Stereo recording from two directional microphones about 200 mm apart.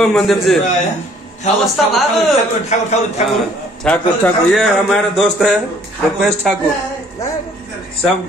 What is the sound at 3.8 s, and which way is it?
A man's voice, 5° left (ahead or behind).